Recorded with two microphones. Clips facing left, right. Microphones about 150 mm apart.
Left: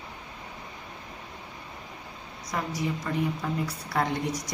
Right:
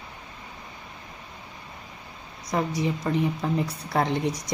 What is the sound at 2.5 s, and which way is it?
A woman's voice, 25° right (ahead or behind).